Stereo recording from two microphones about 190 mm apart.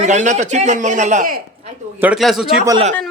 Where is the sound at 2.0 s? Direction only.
Centre (ahead or behind).